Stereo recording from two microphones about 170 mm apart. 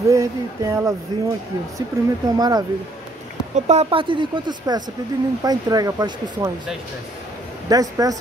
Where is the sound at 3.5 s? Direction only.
40° right (ahead or behind); by 6.5 s 25° right (ahead or behind).